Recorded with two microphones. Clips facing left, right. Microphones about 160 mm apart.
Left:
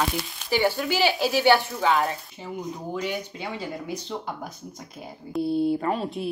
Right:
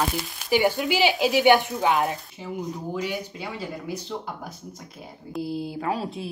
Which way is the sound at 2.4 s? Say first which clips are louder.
Right 1 dB; 5° right (ahead or behind).